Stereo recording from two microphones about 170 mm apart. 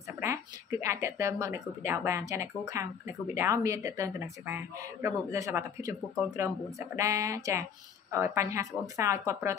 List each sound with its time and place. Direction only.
0.2 s speech: 15° right (ahead or behind)